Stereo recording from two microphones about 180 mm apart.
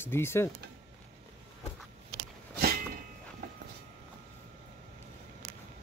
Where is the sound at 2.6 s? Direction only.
60° right (ahead or behind).